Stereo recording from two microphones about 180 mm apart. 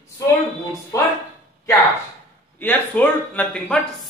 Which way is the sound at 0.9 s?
20° left (ahead or behind).